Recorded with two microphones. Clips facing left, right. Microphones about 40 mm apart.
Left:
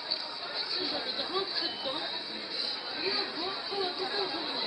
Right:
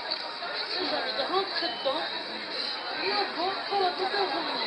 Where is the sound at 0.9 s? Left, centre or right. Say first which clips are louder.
Right 9 dB; right.